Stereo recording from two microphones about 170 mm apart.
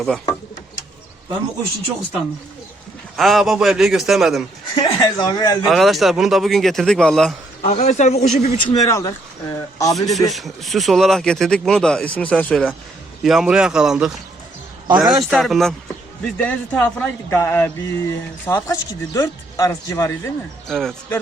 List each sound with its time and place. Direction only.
3.2 s speech: centre (ahead or behind)
4.7 s speech: 25° left (ahead or behind)
5.6 s speech: centre (ahead or behind)
7.6 s speech: 40° left (ahead or behind); by 9.9 s 20° left (ahead or behind)
9.9 s speech: centre (ahead or behind); by 20.3 s 15° left (ahead or behind)
20.7 s speech: 5° left (ahead or behind)